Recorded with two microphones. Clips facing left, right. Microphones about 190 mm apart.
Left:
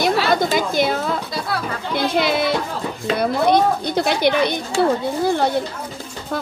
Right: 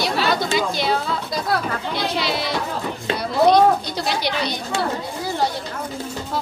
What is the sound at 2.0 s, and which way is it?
Speech, 55° left (ahead or behind).